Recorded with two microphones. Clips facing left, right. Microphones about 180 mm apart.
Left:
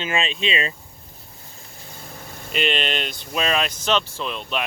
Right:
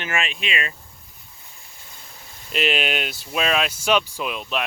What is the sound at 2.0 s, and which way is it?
Vehicle, 55° left (ahead or behind).